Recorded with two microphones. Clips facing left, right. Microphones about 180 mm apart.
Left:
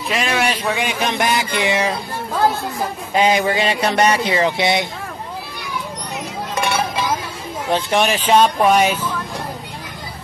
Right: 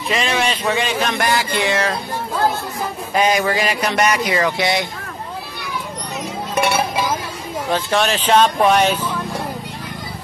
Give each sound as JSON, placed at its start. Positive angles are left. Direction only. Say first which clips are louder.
{"t": 0.1, "sound": "a man's voice", "louder": "even", "side_deg": 5}
{"t": 3.2, "sound": "speech", "louder": "left 1 dB", "side_deg": 25}
{"t": 7.7, "sound": "a man's voice", "louder": "left 1 dB", "side_deg": 15}
{"t": 8.5, "sound": "music", "louder": "even", "side_deg": 5}